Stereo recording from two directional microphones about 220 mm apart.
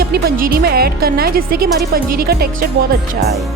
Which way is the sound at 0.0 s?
45° right (ahead or behind).